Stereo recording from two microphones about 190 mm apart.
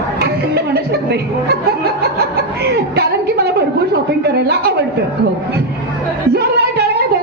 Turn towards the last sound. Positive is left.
turn(degrees=-55)  # may be behind; listen again after turning